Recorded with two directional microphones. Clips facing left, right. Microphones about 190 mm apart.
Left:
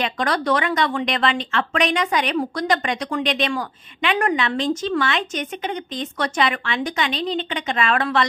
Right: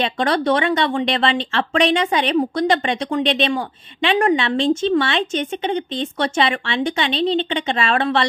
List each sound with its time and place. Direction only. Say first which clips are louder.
0.0 s speech: right 3 dB; 25° right (ahead or behind)